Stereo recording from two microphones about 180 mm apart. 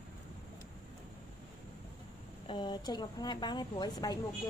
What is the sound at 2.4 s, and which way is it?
Speech, 25° left (ahead or behind).